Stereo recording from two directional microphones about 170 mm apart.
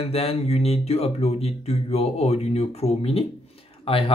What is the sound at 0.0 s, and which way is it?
Speech, 35° left (ahead or behind).